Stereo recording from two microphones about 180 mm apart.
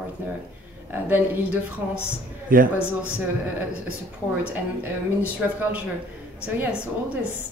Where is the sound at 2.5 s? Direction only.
50° right (ahead or behind).